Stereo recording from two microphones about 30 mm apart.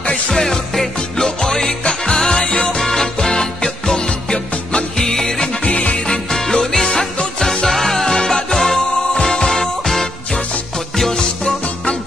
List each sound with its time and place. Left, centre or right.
0.3 s music: centre
2.8 s music: centre
5.7 s music: left
6.3 s music: centre
11.1 s music: left